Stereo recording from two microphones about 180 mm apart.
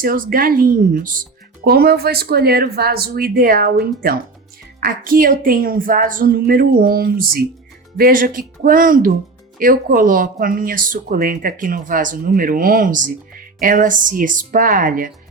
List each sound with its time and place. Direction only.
0.0 s speech: 55° right (ahead or behind)